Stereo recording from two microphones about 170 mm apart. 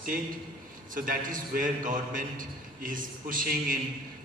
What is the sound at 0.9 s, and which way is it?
A man's voice, 55° right (ahead or behind).